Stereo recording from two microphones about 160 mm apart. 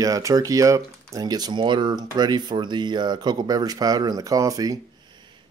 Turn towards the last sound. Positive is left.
turn(degrees=-25)  # may be behind; listen again after turning